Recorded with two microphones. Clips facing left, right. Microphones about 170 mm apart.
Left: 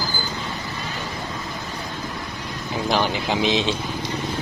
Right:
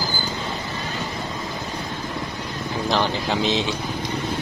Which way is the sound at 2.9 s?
10° left (ahead or behind).